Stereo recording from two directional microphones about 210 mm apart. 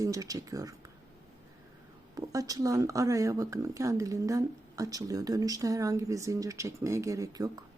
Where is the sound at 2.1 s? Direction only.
15° right (ahead or behind).